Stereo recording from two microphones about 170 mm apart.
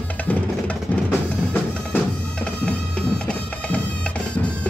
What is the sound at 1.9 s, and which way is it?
Bagpipes, 5° left (ahead or behind).